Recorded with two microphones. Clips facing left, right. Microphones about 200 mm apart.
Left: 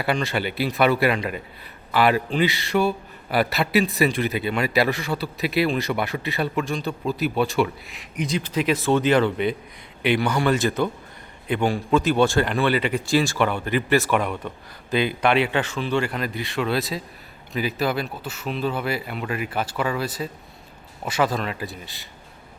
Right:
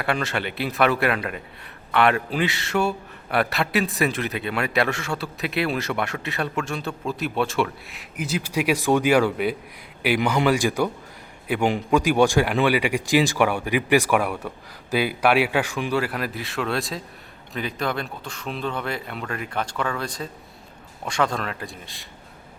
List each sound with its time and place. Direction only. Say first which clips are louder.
0.0 s a man's voice: left 2 dB; centre (ahead or behind)